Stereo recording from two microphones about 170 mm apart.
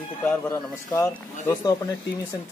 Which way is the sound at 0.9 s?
20° left (ahead or behind).